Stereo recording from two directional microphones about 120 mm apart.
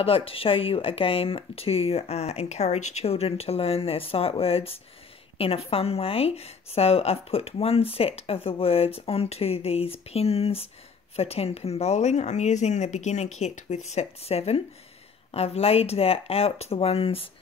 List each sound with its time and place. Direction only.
0.0 s a woman's voice: 50° left (ahead or behind)